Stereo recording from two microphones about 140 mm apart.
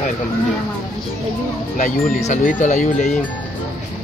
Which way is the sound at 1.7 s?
65° left (ahead or behind).